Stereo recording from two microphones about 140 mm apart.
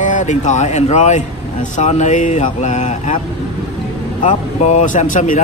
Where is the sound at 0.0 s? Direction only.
60° left (ahead or behind).